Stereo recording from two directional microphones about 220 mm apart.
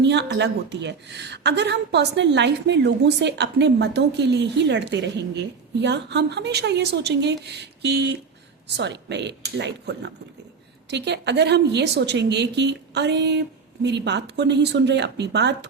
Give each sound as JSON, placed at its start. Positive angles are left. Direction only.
{"t": 0.0, "sound": "speech", "side_deg": -50}